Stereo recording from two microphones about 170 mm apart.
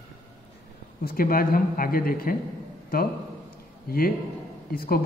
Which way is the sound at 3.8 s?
60° left (ahead or behind).